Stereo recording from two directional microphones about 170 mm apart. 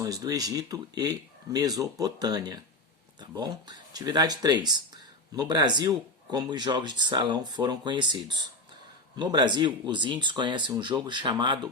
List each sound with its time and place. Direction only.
0.0 s speech: 20° right (ahead or behind)